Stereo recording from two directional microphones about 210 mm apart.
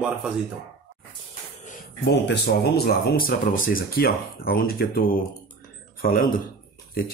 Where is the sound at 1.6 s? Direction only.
50° left (ahead or behind).